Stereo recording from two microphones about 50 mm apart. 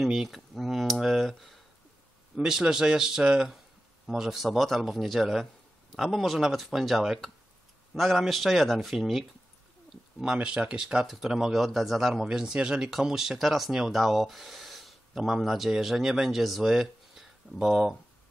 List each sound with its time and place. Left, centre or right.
0.0 s a sound: centre
2.3 s speech: centre
4.3 s speech: centre
10.2 s speech: centre
12.3 s speech: centre